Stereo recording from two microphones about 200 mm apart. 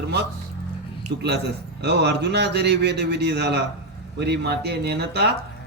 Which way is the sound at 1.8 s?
55° right (ahead or behind).